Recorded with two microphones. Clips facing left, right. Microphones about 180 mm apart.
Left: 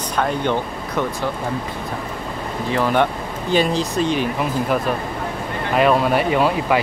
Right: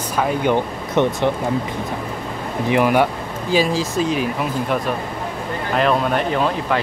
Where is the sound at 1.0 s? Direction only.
25° right (ahead or behind).